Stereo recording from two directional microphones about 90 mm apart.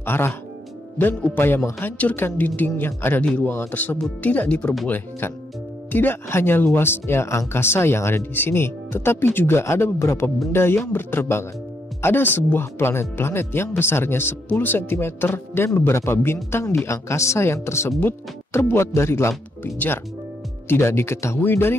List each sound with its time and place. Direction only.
0.0 s speech: 25° left (ahead or behind)